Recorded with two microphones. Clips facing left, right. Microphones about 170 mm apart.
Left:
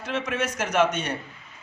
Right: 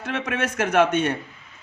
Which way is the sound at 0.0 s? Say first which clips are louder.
Right 1 dB; 55° right (ahead or behind).